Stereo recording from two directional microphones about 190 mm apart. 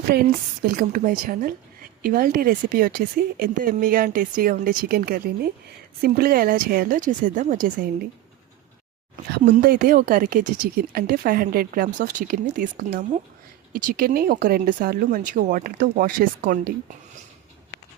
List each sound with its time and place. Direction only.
0.1 s speech: 50° right (ahead or behind)
9.4 s speech: 45° right (ahead or behind)